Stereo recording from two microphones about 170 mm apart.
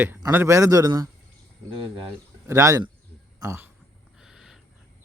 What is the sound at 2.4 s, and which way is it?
Speech, 15° right (ahead or behind).